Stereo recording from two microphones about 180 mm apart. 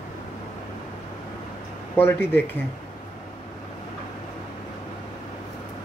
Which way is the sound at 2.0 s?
10° left (ahead or behind).